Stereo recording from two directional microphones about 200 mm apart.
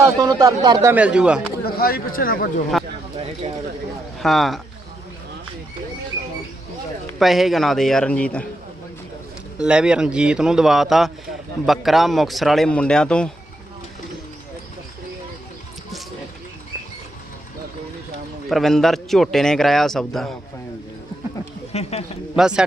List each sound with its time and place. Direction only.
0.0 s speech: 15° right (ahead or behind)
1.6 s speech: 50° left (ahead or behind)
4.2 s a man's voice: centre (ahead or behind)
7.1 s a man's voice: centre (ahead or behind)
9.6 s a man's voice: 5° right (ahead or behind)
18.4 s a man's voice: centre (ahead or behind)
21.7 s a sound: 30° left (ahead or behind)
22.4 s a man's voice: 5° right (ahead or behind)